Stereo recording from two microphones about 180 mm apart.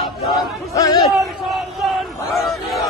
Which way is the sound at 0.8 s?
20° left (ahead or behind).